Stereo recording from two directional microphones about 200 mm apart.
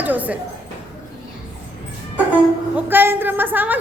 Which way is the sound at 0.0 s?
10° right (ahead or behind).